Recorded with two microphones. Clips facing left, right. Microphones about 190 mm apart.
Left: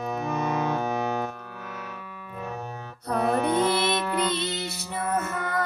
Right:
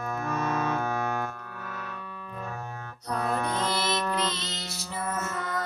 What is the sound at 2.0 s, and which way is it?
Music, 10° left (ahead or behind).